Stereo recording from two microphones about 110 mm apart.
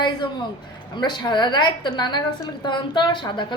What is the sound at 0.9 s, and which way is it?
A woman's voice, 40° left (ahead or behind).